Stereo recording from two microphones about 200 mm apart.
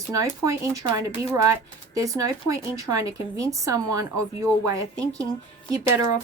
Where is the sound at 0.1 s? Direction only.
15° right (ahead or behind).